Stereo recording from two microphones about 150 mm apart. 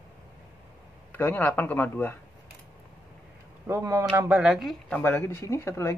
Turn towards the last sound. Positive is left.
turn(degrees=20)  # may be behind; listen again after turning